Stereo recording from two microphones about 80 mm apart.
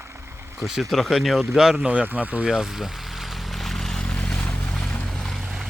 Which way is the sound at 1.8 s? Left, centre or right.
Centre.